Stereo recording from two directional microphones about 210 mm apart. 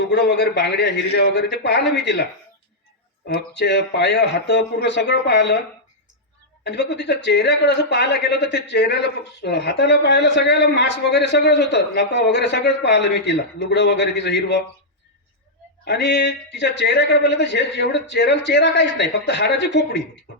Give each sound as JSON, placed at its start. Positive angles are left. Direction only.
{"t": 0.0, "sound": "speech", "side_deg": 55}
{"t": 3.2, "sound": "speech", "side_deg": 55}
{"t": 6.7, "sound": "speech", "side_deg": 55}
{"t": 15.8, "sound": "speech", "side_deg": 55}